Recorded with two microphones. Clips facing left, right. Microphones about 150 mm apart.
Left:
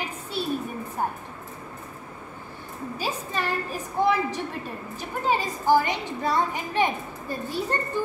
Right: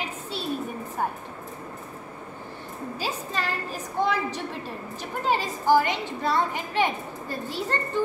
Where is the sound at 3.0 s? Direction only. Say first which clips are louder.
Left 1 dB; 15° left (ahead or behind).